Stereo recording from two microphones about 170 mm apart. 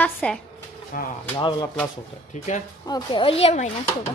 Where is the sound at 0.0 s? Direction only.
10° left (ahead or behind).